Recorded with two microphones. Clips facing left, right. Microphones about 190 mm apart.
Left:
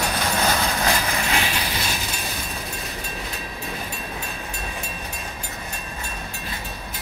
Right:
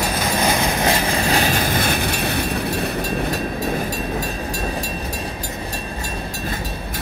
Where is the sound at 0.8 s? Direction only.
25° right (ahead or behind); by 3.0 s 65° right (ahead or behind).